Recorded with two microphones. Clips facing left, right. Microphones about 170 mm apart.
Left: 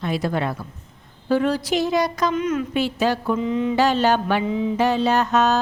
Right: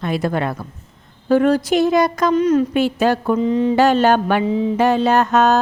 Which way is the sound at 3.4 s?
35° right (ahead or behind).